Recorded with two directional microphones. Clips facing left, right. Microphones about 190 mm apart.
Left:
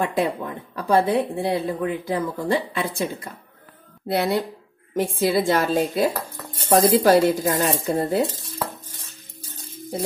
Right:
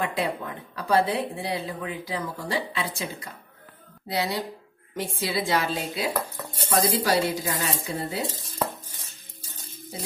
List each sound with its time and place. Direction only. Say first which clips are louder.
0.0 s speech: left 5 dB; 50° left (ahead or behind)
4.1 s speech: left 6 dB; 55° left (ahead or behind)